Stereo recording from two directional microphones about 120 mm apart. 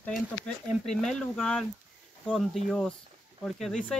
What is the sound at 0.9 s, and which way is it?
Speech, 5° left (ahead or behind).